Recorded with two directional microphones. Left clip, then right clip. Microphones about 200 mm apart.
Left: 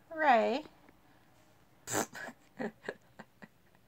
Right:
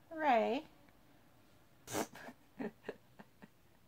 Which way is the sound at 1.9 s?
50° left (ahead or behind).